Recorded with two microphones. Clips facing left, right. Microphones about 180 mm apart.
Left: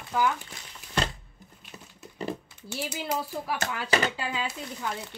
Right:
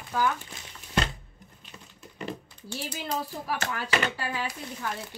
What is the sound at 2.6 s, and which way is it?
Speech, 10° left (ahead or behind).